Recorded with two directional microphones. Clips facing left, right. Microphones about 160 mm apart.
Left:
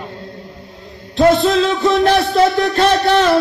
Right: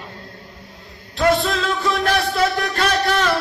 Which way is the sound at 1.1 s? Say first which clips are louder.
Left 6 dB; 25° left (ahead or behind).